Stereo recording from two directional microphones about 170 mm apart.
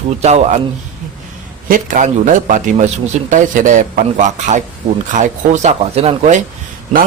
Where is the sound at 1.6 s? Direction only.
50° right (ahead or behind).